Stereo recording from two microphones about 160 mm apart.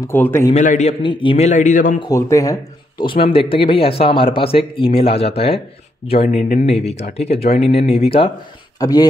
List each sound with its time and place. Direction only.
0.0 s a man's voice: 15° left (ahead or behind)
0.6 s a man's voice: 50° left (ahead or behind)
1.0 s a man's voice: 35° left (ahead or behind); by 2.0 s 55° left (ahead or behind)
2.0 s speech: 20° left (ahead or behind); by 8.3 s 35° left (ahead or behind)
8.7 s speech: 25° left (ahead or behind)